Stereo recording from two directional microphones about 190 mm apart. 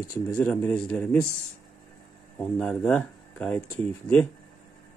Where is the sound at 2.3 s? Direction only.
5° left (ahead or behind).